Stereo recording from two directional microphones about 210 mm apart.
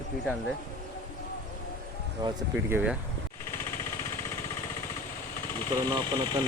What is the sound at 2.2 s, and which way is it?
Speech, 10° right (ahead or behind).